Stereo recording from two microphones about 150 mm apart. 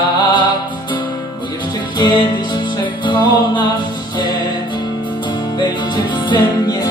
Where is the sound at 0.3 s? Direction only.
30° left (ahead or behind).